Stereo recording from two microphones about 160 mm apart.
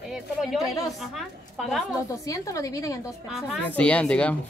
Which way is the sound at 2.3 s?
20° left (ahead or behind).